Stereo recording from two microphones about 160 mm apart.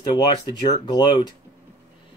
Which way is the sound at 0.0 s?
25° left (ahead or behind).